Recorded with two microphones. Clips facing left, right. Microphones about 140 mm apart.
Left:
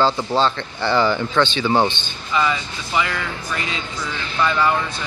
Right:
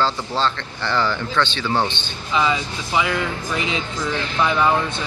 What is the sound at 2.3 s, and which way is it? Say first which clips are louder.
Speech: right 1 dB; 15° right (ahead or behind).